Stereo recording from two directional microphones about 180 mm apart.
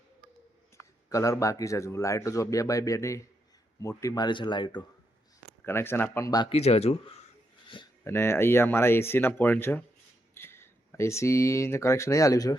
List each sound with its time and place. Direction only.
1.1 s speech: 20° left (ahead or behind)
5.6 s speech: 15° left (ahead or behind)
6.5 s speech: 35° left (ahead or behind)
8.0 s speech: 15° left (ahead or behind)